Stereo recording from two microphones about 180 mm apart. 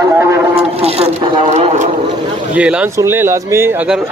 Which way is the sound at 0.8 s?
35° right (ahead or behind).